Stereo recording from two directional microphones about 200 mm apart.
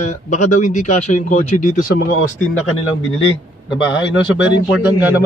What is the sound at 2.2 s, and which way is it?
Speech, 85° left.